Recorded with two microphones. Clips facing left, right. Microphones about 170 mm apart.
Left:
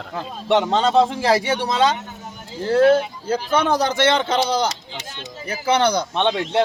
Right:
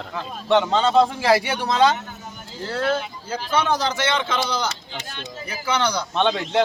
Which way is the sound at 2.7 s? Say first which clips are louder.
Left 9 dB; 50° left (ahead or behind).